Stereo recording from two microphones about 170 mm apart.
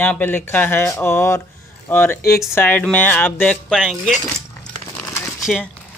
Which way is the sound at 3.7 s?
5° right (ahead or behind).